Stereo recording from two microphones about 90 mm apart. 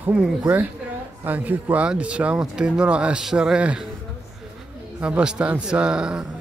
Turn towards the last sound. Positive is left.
turn(degrees=-10)  # may be behind; listen again after turning